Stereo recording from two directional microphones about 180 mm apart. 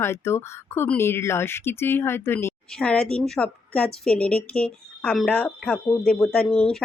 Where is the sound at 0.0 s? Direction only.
15° left (ahead or behind).